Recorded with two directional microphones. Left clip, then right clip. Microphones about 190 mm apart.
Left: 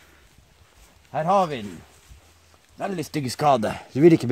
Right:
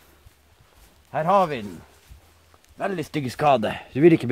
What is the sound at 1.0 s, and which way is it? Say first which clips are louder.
Speech: right 1 dB; 5° left (ahead or behind).